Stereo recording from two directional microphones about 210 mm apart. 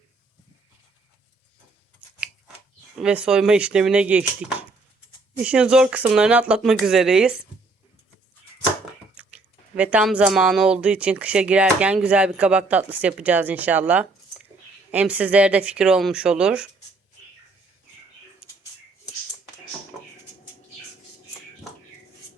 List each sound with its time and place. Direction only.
3.0 s speech: 5° right (ahead or behind)
5.4 s speech: 5° right (ahead or behind)
9.2 s chewing: 5° right (ahead or behind)
9.7 s speech: 5° right (ahead or behind)